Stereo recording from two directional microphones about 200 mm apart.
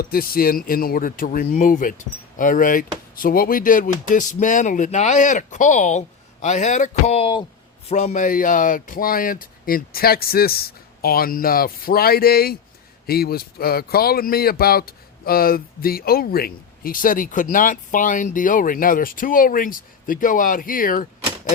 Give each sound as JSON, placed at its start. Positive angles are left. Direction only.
{"t": 0.0, "sound": "speech", "side_deg": 45}